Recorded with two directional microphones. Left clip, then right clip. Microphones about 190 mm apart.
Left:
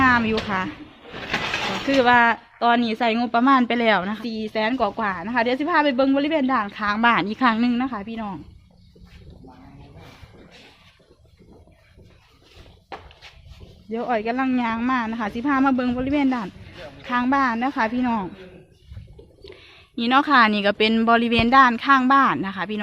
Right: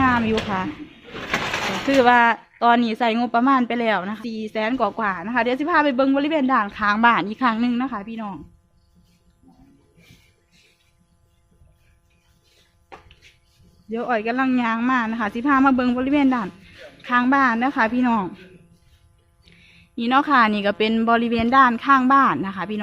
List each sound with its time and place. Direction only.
0.0 s a woman's voice: centre (ahead or behind)
4.2 s a woman's voice: 10° right (ahead or behind)
12.9 s a sound: 40° left (ahead or behind)
13.9 s a woman's voice: 15° right (ahead or behind)
19.5 s a woman's voice: centre (ahead or behind)